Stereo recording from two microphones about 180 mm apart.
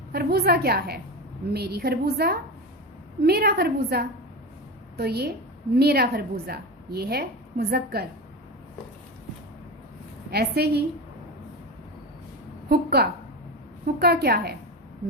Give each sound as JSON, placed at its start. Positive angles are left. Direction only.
{"t": 0.1, "sound": "a woman's voice", "side_deg": -60}
{"t": 10.3, "sound": "a woman's voice", "side_deg": -65}
{"t": 12.6, "sound": "a woman's voice", "side_deg": -60}